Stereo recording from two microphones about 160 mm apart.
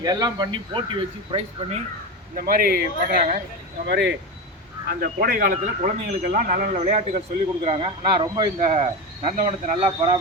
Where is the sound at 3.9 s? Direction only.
90° right.